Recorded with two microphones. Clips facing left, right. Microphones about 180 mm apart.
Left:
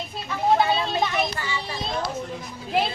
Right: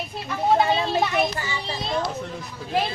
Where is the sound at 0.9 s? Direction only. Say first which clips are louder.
Right 2 dB; 5° right (ahead or behind).